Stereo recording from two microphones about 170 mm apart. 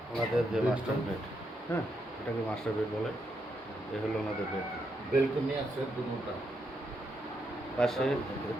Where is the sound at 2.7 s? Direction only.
5° left (ahead or behind).